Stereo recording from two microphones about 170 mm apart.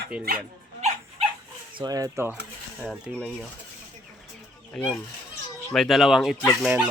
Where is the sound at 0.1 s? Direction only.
5° right (ahead or behind).